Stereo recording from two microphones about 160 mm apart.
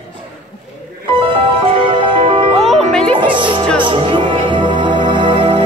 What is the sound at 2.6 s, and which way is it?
Music, 5° left (ahead or behind).